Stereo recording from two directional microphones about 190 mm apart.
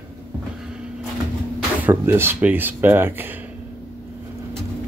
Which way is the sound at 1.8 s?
10° right (ahead or behind).